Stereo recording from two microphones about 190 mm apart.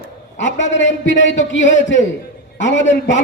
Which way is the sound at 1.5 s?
75° left (ahead or behind).